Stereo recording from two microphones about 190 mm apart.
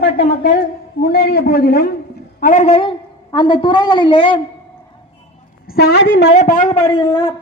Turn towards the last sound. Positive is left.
turn(degrees=20)  # may be behind; listen again after turning